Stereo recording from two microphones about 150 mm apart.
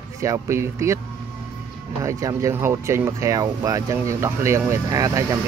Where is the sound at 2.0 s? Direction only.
20° right (ahead or behind).